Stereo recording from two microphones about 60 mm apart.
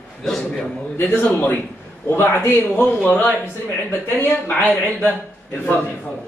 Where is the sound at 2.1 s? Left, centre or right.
Left.